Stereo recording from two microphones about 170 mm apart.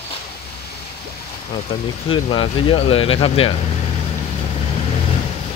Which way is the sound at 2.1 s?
30° left (ahead or behind).